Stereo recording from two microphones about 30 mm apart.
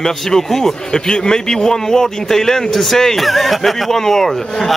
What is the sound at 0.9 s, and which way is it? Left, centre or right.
A man's voice, left.